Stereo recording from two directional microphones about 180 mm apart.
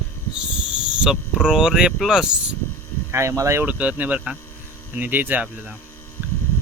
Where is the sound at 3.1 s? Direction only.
15° right (ahead or behind).